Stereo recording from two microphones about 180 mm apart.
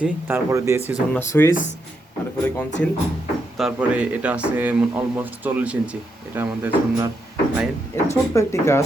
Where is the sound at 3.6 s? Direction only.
5° right (ahead or behind).